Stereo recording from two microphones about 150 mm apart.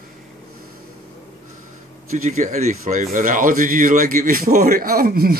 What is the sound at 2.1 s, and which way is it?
Speech, 55° right (ahead or behind).